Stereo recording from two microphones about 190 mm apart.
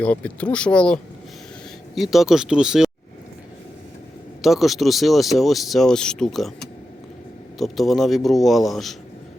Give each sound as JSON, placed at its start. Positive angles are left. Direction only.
{"t": 0.0, "sound": "speech", "side_deg": 5}
{"t": 2.0, "sound": "speech", "side_deg": 0}
{"t": 4.4, "sound": "speech", "side_deg": 0}